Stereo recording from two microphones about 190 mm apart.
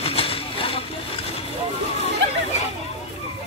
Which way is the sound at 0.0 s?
30° left (ahead or behind).